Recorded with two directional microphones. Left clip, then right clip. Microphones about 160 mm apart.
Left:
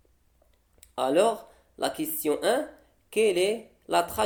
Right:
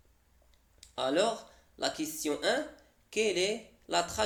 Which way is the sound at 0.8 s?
35° left (ahead or behind).